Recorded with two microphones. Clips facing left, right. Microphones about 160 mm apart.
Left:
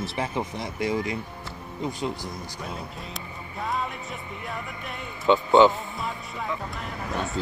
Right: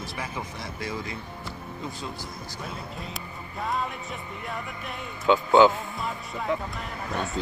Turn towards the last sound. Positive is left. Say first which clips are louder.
# left 1 dB
turn(degrees=0)  # may be behind; listen again after turning